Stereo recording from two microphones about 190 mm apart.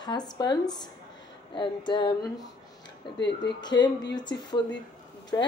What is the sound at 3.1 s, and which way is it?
Speech, 65° left (ahead or behind).